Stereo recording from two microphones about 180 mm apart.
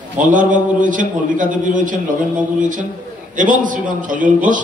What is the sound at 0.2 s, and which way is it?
A man's voice, 45° right (ahead or behind).